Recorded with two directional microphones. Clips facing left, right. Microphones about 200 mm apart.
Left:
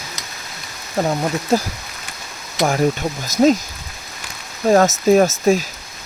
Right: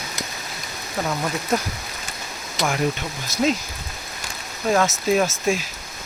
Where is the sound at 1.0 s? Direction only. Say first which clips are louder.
Left 5 dB; 35° left (ahead or behind).